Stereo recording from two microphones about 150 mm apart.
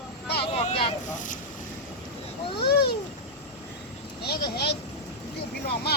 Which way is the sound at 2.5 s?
90° left.